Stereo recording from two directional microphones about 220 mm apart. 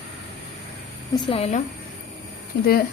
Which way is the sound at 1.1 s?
25° left (ahead or behind).